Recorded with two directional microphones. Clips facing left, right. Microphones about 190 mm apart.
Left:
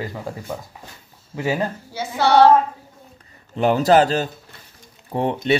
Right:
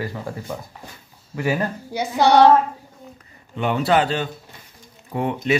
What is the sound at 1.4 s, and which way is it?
Speech, 20° left (ahead or behind).